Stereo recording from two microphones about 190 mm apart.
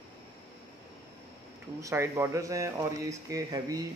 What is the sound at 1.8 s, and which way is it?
Speech, 15° right (ahead or behind).